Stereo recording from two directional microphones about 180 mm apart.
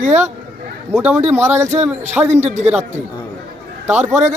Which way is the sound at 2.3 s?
40° right (ahead or behind).